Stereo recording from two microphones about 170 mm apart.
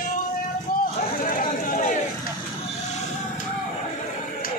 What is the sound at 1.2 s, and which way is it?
Speech, 55° left (ahead or behind).